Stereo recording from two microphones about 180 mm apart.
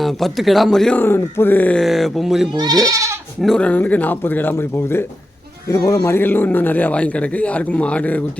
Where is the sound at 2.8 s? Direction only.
20° right (ahead or behind).